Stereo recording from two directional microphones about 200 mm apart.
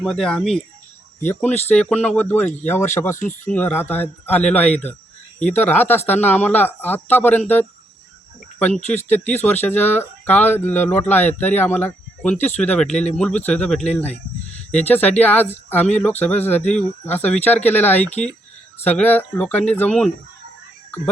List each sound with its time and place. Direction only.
0.0 s speech: centre (ahead or behind)
9.0 s speech: 35° left (ahead or behind)
9.4 s speech: 10° left (ahead or behind)
12.4 s speech: 35° left (ahead or behind)
12.6 s speech: 5° left (ahead or behind)